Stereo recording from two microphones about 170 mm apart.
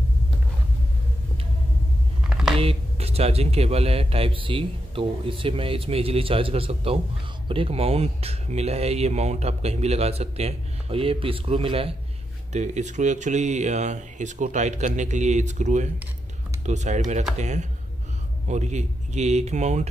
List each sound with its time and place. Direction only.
2.6 s speech: 35° right (ahead or behind)
12.5 s speech: 45° right (ahead or behind)